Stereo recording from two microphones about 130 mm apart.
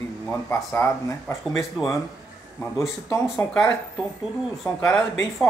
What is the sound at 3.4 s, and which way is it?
Speech, 15° left (ahead or behind).